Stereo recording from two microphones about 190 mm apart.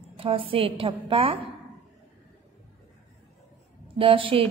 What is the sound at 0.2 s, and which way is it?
A woman's voice, 30° right (ahead or behind).